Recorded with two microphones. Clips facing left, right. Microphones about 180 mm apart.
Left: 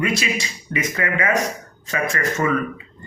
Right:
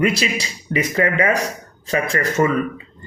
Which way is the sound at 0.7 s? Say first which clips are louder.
Right 5 dB; 35° right (ahead or behind).